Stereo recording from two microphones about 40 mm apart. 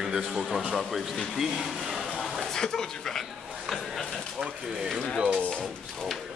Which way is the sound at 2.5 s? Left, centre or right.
Centre.